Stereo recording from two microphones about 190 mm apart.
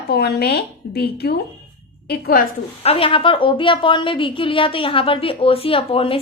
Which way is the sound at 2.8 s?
30° left (ahead or behind).